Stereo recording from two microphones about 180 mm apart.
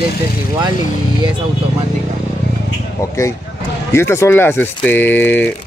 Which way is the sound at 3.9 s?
15° left (ahead or behind).